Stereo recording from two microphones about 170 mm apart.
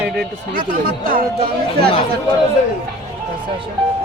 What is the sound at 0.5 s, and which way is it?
Speech, 55° right (ahead or behind).